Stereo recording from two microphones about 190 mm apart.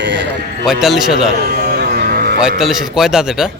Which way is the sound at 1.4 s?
55° right (ahead or behind).